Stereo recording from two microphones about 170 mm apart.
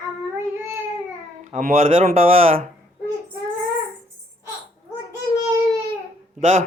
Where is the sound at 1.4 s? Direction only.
50° right (ahead or behind).